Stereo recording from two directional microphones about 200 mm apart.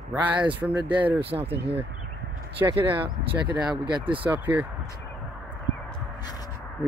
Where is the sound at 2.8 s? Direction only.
25° right (ahead or behind).